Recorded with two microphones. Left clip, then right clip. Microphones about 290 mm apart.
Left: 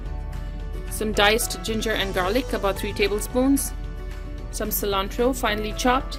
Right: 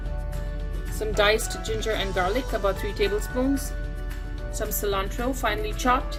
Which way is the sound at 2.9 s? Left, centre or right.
Left.